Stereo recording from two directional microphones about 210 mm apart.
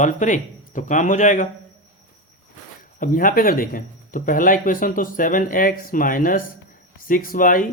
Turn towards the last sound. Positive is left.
turn(degrees=40)  # may be behind; listen again after turning